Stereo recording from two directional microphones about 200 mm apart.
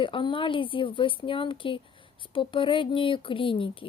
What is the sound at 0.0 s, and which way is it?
Speech, 25° left (ahead or behind).